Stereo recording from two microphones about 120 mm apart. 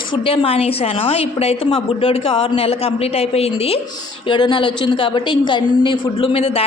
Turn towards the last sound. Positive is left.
turn(degrees=55)  # may be behind; listen again after turning